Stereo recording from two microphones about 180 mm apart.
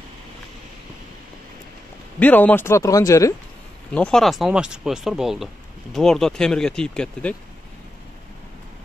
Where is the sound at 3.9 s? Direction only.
5° left (ahead or behind).